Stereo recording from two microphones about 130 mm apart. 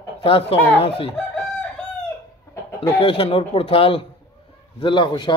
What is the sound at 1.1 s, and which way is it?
Chicken, 5° left (ahead or behind).